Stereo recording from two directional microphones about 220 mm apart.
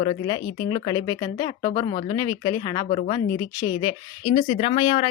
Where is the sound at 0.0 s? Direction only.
20° left (ahead or behind).